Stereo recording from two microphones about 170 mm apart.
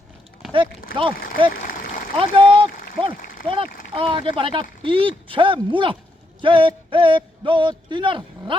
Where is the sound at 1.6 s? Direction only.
55° left (ahead or behind).